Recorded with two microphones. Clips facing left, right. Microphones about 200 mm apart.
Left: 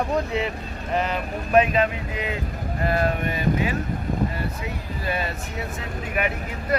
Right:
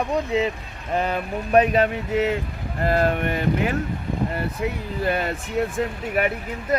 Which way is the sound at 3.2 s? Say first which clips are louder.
Right 1 dB; 65° right (ahead or behind).